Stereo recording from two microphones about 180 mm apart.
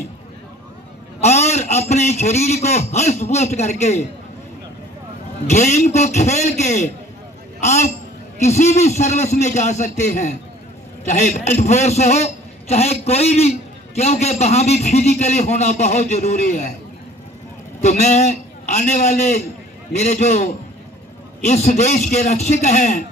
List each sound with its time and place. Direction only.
1.2 s a man's voice: 35° left (ahead or behind)
5.5 s a man's voice: 40° left (ahead or behind)
17.8 s a man's voice: 40° left (ahead or behind)
21.5 s a man's voice: 40° left (ahead or behind)